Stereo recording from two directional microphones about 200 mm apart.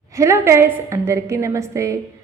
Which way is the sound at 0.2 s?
15° right (ahead or behind).